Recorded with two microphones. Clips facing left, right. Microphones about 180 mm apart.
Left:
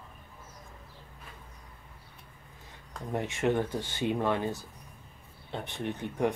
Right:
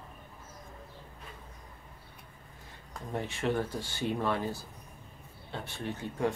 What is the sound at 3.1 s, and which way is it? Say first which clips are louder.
Speech: left 3 dB; 20° left (ahead or behind).